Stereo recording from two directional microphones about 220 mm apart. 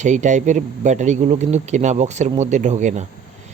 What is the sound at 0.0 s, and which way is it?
Speech, 35° right (ahead or behind).